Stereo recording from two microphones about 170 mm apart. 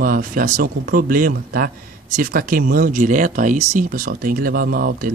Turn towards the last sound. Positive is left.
turn(degrees=-60)  # may be behind; listen again after turning